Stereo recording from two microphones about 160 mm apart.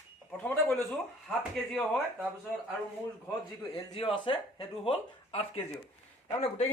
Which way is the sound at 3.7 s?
35° left (ahead or behind).